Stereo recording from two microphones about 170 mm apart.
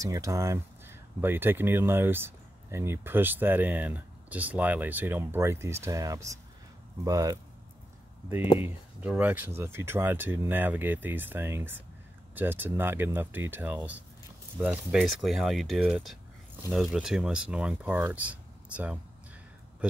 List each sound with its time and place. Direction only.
0.0 s speech: 20° right (ahead or behind)
8.5 s speech: 10° right (ahead or behind)